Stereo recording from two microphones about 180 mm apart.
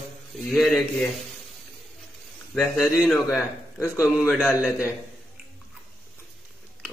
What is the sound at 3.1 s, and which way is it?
Speech, 15° left (ahead or behind).